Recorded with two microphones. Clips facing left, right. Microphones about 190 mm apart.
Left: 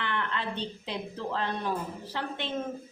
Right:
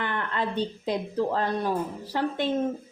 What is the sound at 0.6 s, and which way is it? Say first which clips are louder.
Speech: right 7 dB; 45° right (ahead or behind).